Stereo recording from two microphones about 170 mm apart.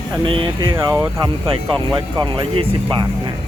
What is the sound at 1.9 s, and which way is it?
Speech, 25° right (ahead or behind).